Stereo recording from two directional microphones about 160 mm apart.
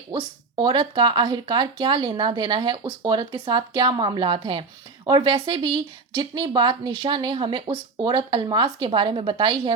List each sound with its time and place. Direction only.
0.1 s a woman's voice: 30° right (ahead or behind)